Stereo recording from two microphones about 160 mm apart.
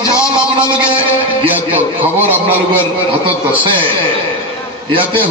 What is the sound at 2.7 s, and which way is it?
A man's voice, 35° right (ahead or behind).